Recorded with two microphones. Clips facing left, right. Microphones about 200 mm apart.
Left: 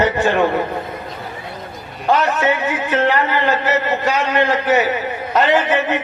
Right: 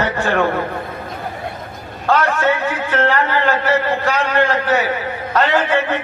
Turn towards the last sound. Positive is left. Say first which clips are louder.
# left 1 dB
turn(degrees=15)  # may be behind; listen again after turning